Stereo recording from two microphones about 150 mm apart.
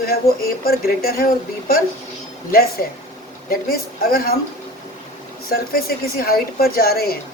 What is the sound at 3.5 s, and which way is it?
Speech, 80° left.